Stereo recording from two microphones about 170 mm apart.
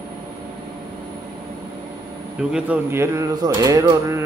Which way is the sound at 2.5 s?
10° right (ahead or behind).